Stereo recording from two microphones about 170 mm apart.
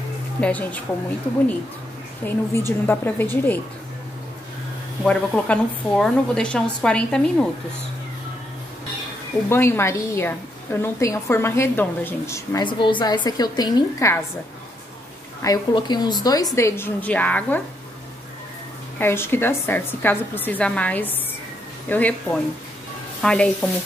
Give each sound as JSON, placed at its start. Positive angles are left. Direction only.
{"t": 0.4, "sound": "a woman's voice", "side_deg": 10}
{"t": 2.2, "sound": "a woman's voice", "side_deg": 15}
{"t": 5.0, "sound": "speech", "side_deg": 5}
{"t": 9.5, "sound": "a woman's voice", "side_deg": 15}
{"t": 12.6, "sound": "a woman's voice", "side_deg": 30}
{"t": 15.4, "sound": "a woman's voice", "side_deg": 25}
{"t": 18.9, "sound": "a woman's voice", "side_deg": 15}